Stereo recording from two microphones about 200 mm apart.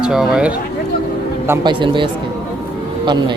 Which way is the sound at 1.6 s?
25° right (ahead or behind).